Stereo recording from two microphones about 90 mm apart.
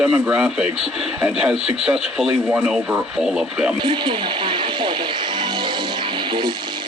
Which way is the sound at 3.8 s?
65° right (ahead or behind).